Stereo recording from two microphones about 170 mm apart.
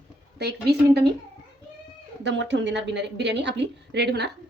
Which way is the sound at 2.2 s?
90° right.